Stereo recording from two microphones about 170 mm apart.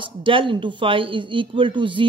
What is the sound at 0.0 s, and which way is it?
Speech, 30° right (ahead or behind).